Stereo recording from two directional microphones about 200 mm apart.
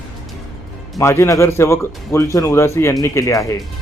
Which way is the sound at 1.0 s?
15° left (ahead or behind).